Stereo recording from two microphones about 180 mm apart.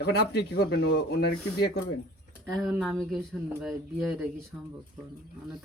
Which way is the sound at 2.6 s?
Centre (ahead or behind).